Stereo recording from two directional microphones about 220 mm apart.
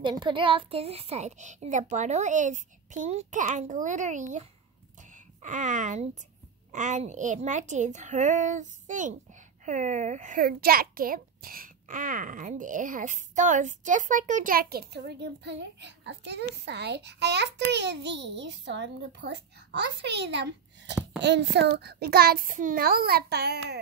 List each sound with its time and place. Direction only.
0.0 s a woman's voice: 20° right (ahead or behind); by 23.8 s 50° right (ahead or behind)